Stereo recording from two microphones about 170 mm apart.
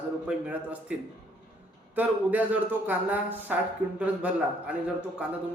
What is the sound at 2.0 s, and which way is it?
A man's voice, 10° right (ahead or behind).